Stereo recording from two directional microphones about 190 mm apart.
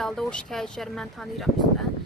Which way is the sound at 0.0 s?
Centre (ahead or behind).